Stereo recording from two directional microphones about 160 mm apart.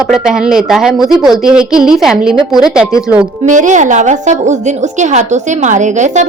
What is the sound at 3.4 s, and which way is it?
A woman's voice, 50° right (ahead or behind).